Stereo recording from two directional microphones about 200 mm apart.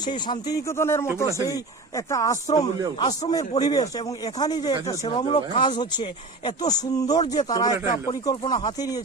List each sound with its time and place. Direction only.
0.1 s speech: 20° left (ahead or behind)